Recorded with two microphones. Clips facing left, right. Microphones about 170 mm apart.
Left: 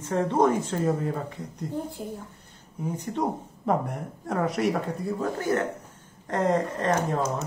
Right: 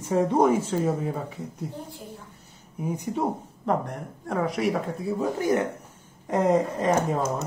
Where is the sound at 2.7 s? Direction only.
10° right (ahead or behind).